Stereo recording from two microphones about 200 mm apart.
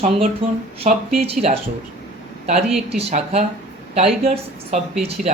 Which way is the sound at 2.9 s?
30° right (ahead or behind).